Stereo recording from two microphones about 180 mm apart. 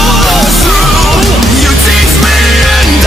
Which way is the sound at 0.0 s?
Centre (ahead or behind).